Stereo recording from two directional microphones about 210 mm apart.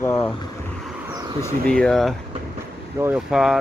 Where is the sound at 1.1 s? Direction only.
15° right (ahead or behind).